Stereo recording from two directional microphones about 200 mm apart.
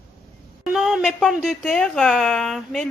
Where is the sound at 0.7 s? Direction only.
Centre (ahead or behind).